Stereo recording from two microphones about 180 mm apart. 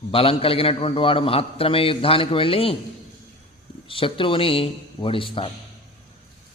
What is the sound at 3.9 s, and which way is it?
A man's voice, 30° left (ahead or behind).